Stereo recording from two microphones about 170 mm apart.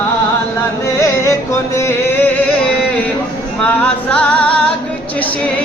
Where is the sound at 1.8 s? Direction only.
15° left (ahead or behind).